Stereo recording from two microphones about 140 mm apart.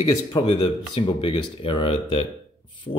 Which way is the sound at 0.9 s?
40° left (ahead or behind).